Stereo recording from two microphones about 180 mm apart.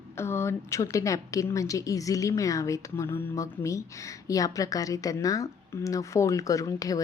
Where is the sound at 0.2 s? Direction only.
15° left (ahead or behind).